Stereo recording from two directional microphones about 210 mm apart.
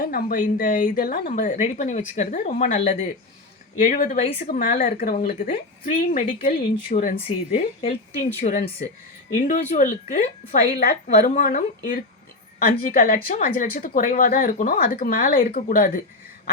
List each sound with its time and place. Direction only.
0.0 s a woman's voice: 45° left (ahead or behind)
8.4 s a woman's voice: 40° left (ahead or behind)